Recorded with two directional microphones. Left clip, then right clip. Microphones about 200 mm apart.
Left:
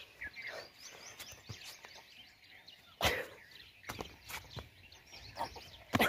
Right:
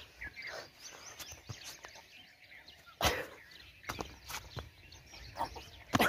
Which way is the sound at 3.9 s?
5° right (ahead or behind).